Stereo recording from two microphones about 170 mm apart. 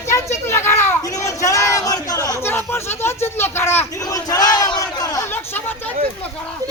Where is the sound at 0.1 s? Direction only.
15° left (ahead or behind).